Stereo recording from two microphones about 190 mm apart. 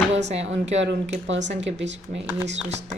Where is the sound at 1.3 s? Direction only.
70° right (ahead or behind).